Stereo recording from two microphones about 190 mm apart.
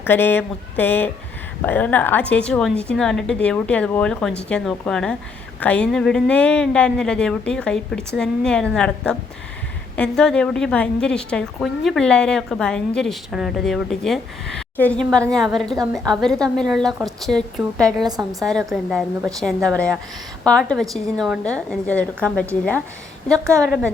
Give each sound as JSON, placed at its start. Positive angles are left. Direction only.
{"t": 0.0, "sound": "a woman's voice", "side_deg": 10}
{"t": 18.0, "sound": "a woman's voice", "side_deg": -20}
{"t": 18.7, "sound": "a woman's voice", "side_deg": 0}
{"t": 23.4, "sound": "a woman's voice", "side_deg": -15}